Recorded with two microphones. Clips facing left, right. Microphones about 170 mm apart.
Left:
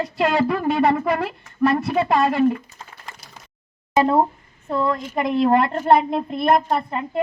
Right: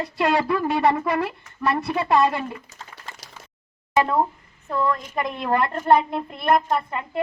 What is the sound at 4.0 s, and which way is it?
A child's voice, 30° left (ahead or behind).